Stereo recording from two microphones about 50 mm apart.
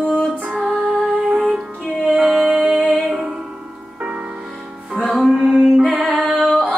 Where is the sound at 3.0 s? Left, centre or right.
Centre.